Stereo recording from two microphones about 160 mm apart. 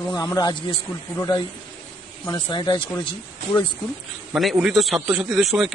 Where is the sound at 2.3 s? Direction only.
25° left (ahead or behind).